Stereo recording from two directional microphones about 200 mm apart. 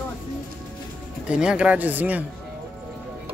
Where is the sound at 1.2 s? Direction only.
5° right (ahead or behind).